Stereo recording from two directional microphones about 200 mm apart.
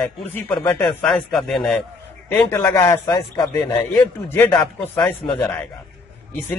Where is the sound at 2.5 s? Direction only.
15° left (ahead or behind).